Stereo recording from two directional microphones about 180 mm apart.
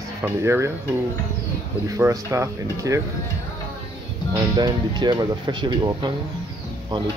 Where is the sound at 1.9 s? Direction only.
15° right (ahead or behind).